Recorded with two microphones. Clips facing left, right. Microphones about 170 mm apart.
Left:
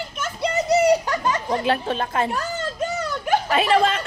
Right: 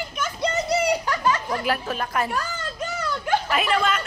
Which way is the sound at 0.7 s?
20° left (ahead or behind).